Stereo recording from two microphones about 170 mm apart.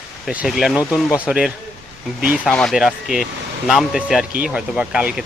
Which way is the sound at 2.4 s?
5° left (ahead or behind).